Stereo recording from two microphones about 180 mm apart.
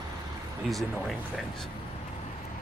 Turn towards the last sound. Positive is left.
turn(degrees=0)  # may be behind; listen again after turning